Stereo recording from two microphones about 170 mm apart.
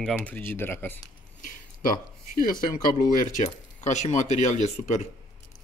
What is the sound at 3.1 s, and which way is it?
Speech, 50° left (ahead or behind).